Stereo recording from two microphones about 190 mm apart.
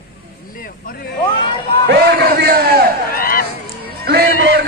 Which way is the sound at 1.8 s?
55° right (ahead or behind).